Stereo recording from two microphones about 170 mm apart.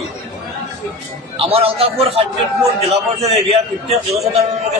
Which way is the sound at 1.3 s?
35° right (ahead or behind).